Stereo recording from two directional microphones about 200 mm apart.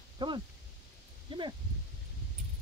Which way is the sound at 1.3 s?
25° right (ahead or behind).